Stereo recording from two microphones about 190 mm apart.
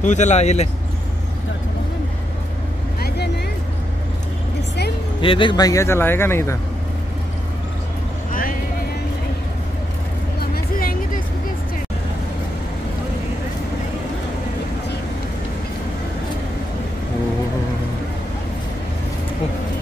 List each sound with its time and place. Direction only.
0.0 s speech: 40° left (ahead or behind)
4.6 s music: 60° left (ahead or behind)
5.2 s a man's voice: 25° left (ahead or behind)
8.3 s vehicle: 45° left (ahead or behind)
10.5 s a sound: 50° left (ahead or behind)